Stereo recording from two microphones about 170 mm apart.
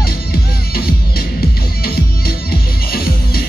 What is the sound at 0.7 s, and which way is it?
Music, 65° left (ahead or behind).